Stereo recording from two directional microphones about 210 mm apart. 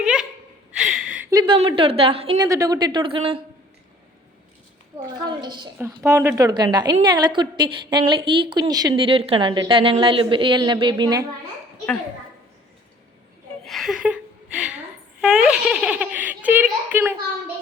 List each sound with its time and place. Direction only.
0.0 s laughter: 5° right (ahead or behind)
0.8 s a sound: 5° right (ahead or behind)
1.3 s a woman's voice: 20° right (ahead or behind)
5.0 s a woman's voice: 20° right (ahead or behind)
13.7 s a sound: centre (ahead or behind)
15.2 s a child's voice: 5° right (ahead or behind)